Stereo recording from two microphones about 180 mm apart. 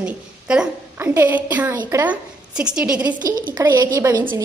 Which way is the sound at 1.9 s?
10° right (ahead or behind).